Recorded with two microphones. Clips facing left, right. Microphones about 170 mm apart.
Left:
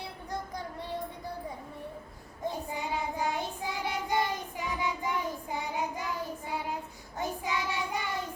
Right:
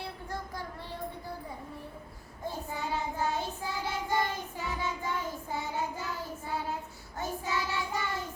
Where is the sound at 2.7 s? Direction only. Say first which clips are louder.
Even; 15° left (ahead or behind).